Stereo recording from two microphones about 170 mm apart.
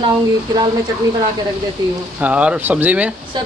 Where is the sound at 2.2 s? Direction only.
5° right (ahead or behind).